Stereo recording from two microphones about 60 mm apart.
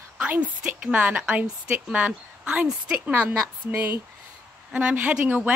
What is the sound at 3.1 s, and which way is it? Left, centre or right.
Speech, right.